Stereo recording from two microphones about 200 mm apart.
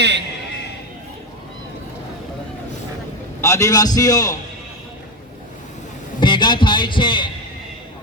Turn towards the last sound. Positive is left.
turn(degrees=25)  # may be behind; listen again after turning